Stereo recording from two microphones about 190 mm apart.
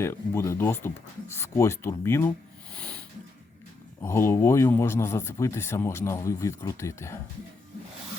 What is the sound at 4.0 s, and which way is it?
Speech, 15° left (ahead or behind).